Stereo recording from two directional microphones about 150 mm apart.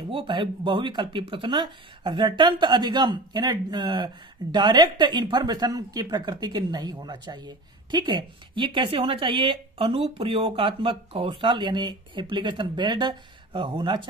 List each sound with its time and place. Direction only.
0.1 s speech: 35° right (ahead or behind)